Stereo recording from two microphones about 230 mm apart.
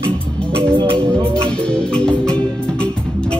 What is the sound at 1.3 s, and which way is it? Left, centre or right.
Music, centre.